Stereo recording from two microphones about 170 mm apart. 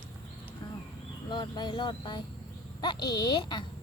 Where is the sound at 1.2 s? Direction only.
25° left (ahead or behind).